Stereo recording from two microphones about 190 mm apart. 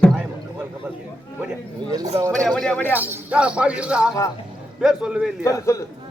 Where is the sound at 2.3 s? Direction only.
5° left (ahead or behind).